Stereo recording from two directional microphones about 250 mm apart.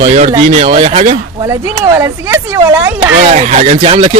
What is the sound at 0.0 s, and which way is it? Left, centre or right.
Speech, right.